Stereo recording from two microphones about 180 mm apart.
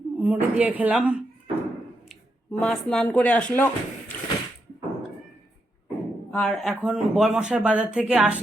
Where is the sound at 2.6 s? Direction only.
5° left (ahead or behind).